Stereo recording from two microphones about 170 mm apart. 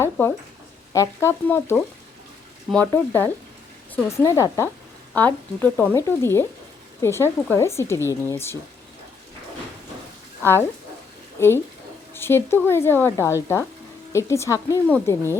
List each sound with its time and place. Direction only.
0.0 s a sound: 15° left (ahead or behind)
0.9 s speech: 15° left (ahead or behind)
10.4 s speech: 15° left (ahead or behind)